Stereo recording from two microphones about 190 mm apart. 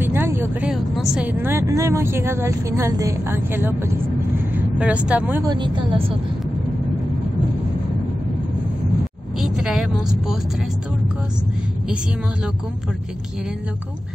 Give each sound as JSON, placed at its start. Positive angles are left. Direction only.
{"t": 0.0, "sound": "a woman's voice", "side_deg": -10}
{"t": 5.4, "sound": "speech", "side_deg": -20}
{"t": 9.4, "sound": "a sound", "side_deg": -5}